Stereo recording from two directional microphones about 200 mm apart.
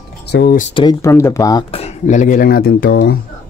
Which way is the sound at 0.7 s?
15° left (ahead or behind).